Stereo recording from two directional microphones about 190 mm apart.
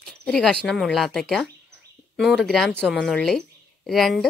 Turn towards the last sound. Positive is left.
turn(degrees=0)  # may be behind; listen again after turning